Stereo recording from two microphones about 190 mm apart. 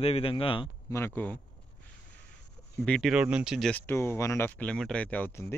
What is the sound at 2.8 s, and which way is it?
Speech, 5° left (ahead or behind).